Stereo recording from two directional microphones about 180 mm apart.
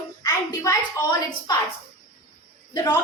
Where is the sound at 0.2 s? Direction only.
20° left (ahead or behind).